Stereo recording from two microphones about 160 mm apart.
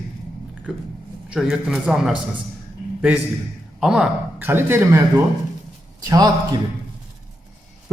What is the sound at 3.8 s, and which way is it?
A man's voice, 5° right (ahead or behind).